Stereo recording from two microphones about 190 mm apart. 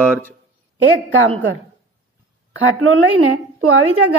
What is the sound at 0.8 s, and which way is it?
Speech, 90° right.